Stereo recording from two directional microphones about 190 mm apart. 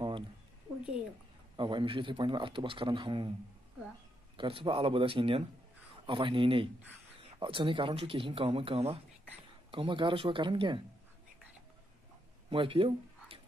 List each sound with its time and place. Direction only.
1.6 s a man's voice: 25° right (ahead or behind)
4.4 s a man's voice: 25° right (ahead or behind)
12.4 s a sound: 25° right (ahead or behind)